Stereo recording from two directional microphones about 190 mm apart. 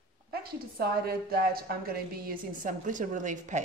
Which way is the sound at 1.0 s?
55° right (ahead or behind).